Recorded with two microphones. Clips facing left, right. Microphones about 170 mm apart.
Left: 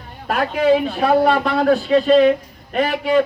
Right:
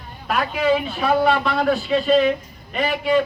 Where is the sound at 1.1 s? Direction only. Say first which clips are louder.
Left 2 dB; 40° left (ahead or behind).